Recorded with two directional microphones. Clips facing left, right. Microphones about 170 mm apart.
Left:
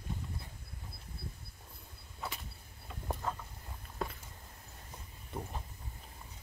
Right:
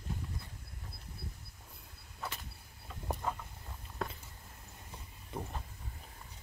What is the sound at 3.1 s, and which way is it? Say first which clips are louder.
Vehicle: right 1 dB; 5° right (ahead or behind).